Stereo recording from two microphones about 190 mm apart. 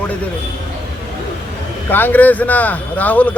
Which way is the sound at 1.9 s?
10° left (ahead or behind).